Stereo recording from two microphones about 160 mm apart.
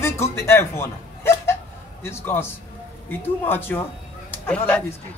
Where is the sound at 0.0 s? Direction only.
15° left (ahead or behind).